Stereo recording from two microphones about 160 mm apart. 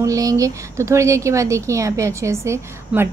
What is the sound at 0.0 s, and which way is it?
A woman's voice, 20° right (ahead or behind).